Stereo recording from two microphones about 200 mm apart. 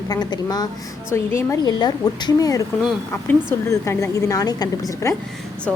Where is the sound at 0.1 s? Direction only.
20° left (ahead or behind).